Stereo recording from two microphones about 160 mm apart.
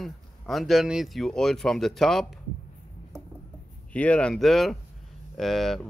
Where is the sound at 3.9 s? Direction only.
10° left (ahead or behind).